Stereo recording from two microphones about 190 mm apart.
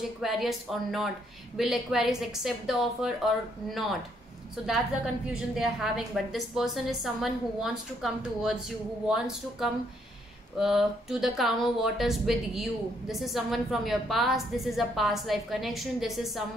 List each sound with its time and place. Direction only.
0.2 s a woman's voice: centre (ahead or behind)
4.6 s a woman's voice: 5° right (ahead or behind)